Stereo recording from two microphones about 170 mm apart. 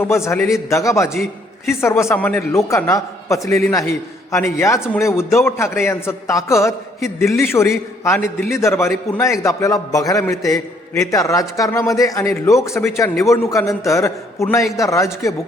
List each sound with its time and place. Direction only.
0.0 s a man's voice: 15° left (ahead or behind)